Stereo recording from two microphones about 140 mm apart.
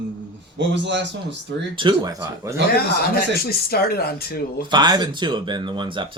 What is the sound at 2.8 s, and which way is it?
Speech, 90° left.